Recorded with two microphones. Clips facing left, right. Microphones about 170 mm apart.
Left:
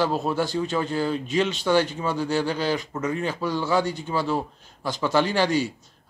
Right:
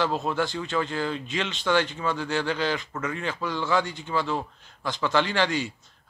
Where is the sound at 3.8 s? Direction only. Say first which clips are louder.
Left 7 dB; 45° left (ahead or behind).